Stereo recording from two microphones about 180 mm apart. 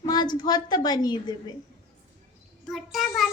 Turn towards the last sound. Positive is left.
turn(degrees=0)  # may be behind; listen again after turning